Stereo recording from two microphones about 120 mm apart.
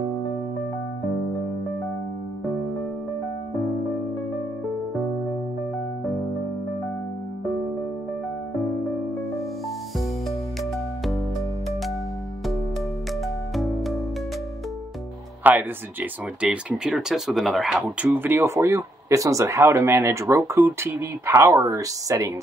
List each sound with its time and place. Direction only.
13.6 s music: centre (ahead or behind)
15.4 s speech: 15° right (ahead or behind)
17.8 s speech: 15° right (ahead or behind)